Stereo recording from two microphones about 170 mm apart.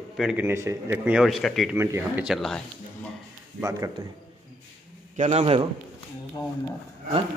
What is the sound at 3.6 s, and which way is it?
Speech, 20° right (ahead or behind).